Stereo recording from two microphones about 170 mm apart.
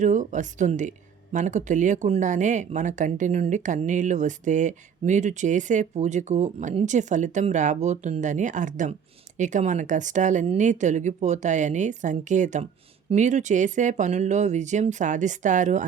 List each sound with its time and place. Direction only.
0.0 s speech: 45° right (ahead or behind)